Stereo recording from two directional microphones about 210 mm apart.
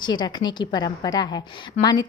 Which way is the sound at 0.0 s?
20° left (ahead or behind).